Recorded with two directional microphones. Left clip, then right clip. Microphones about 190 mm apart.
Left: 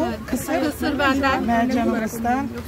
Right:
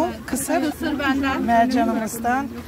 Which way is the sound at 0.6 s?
45° left (ahead or behind).